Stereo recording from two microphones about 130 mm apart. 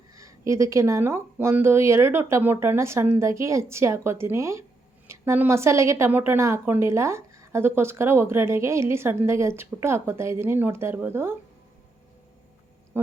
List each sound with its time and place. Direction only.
0.1 s speech: 25° right (ahead or behind)